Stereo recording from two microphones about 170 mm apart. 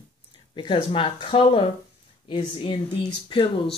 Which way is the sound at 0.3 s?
30° left (ahead or behind).